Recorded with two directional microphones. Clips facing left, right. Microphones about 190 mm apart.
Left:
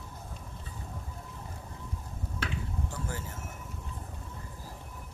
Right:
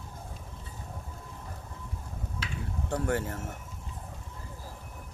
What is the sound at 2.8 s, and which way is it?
Speech, 65° right (ahead or behind).